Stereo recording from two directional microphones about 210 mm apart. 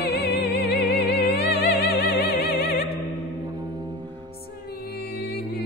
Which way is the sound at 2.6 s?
45° left (ahead or behind).